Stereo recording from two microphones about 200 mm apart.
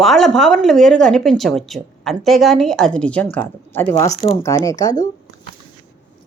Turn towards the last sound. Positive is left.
turn(degrees=20)  # may be behind; listen again after turning